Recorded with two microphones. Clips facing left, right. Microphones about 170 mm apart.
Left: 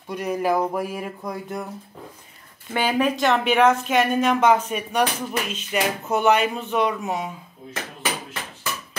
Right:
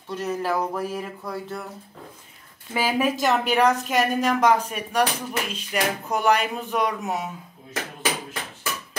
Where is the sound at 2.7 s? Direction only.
5° right (ahead or behind).